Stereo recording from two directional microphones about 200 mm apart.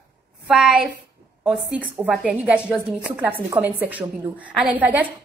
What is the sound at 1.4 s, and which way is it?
A woman's voice, 5° right (ahead or behind).